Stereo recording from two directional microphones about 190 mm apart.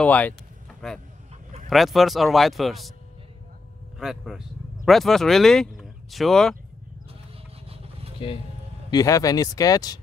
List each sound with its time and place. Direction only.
0.0 s speech: 10° left (ahead or behind)
4.0 s speech: centre (ahead or behind)
7.6 s vehicle: 30° right (ahead or behind)
8.9 s speech: 20° left (ahead or behind)